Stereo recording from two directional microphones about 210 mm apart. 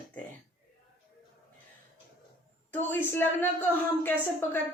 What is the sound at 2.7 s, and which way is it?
Speech, 10° left (ahead or behind).